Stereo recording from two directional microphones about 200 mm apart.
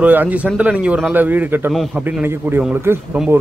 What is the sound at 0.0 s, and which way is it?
Speech, 10° right (ahead or behind).